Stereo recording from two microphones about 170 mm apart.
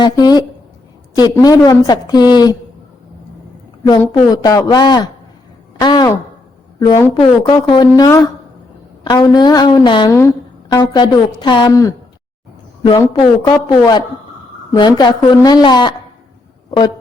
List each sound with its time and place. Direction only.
0.0 s a woman's voice: 25° left (ahead or behind)
4.3 s a woman's voice: 20° left (ahead or behind)
5.8 s a sound: 25° left (ahead or behind)
6.7 s a woman's voice: 25° left (ahead or behind)